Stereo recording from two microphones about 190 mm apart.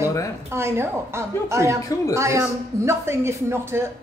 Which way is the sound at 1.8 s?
15° left (ahead or behind).